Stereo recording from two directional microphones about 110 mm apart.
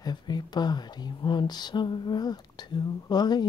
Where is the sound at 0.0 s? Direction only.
40° left (ahead or behind).